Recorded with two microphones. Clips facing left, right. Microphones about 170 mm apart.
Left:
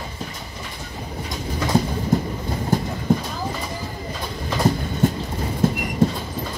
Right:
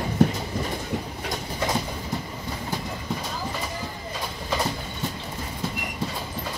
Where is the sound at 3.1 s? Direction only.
50° left (ahead or behind).